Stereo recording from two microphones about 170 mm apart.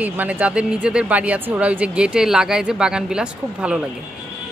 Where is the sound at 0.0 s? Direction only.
10° right (ahead or behind).